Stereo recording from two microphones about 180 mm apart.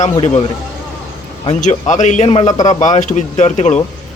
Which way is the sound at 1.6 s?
45° left (ahead or behind).